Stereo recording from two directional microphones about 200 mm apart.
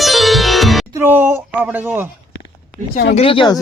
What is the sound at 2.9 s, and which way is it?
Speech, 55° left (ahead or behind).